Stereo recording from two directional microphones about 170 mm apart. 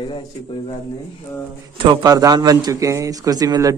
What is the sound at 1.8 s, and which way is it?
A man's voice, 25° right (ahead or behind).